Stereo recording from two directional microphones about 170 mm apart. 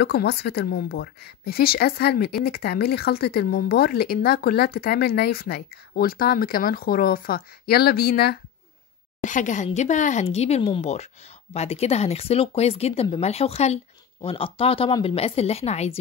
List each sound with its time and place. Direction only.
0.0 s speech: 70° left (ahead or behind)
9.2 s a woman's voice: 50° left (ahead or behind)